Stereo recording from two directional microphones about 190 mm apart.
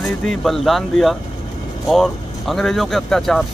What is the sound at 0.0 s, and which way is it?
Speech, centre (ahead or behind).